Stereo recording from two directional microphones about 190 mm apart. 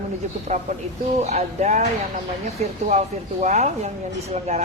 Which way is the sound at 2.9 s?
35° right (ahead or behind).